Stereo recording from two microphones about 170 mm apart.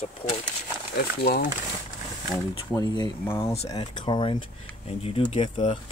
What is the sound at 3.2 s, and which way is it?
Speech, 15° left (ahead or behind).